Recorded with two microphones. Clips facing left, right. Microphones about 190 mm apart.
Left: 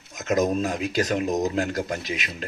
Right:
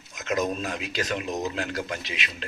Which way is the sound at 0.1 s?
45° left (ahead or behind).